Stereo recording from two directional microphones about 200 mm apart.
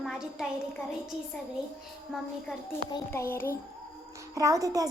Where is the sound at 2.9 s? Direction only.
15° left (ahead or behind).